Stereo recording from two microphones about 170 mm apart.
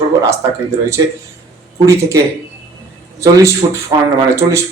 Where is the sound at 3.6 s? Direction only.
25° right (ahead or behind).